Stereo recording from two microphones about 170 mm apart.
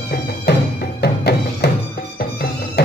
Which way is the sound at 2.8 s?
75° left (ahead or behind).